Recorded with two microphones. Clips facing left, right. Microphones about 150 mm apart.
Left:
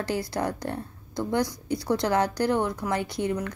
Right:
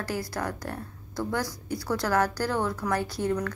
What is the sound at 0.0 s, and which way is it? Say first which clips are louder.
Speech: left 3 dB; 25° left (ahead or behind).